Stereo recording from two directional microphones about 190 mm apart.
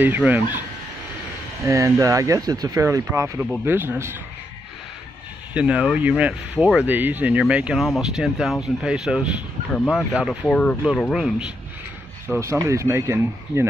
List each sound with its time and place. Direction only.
0.0 s speech: 10° right (ahead or behind)
5.5 s speech: 5° right (ahead or behind)
10.4 s speech: 5° left (ahead or behind)
12.3 s speech: 15° right (ahead or behind)